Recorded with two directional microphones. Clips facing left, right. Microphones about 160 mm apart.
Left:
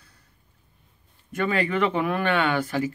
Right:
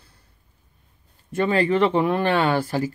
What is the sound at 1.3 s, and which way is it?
Speech, 30° right (ahead or behind).